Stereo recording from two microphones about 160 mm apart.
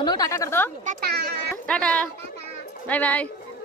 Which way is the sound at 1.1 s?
90° right.